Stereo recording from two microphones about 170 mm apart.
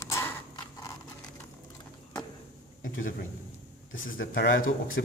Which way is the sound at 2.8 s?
50° left (ahead or behind).